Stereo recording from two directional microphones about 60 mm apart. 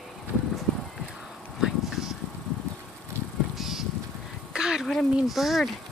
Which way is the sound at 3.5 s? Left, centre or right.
Centre.